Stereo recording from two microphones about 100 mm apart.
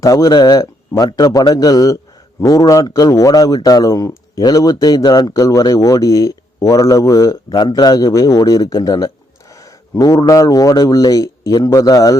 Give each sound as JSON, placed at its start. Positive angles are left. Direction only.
{"t": 0.0, "sound": "a man's voice", "side_deg": 35}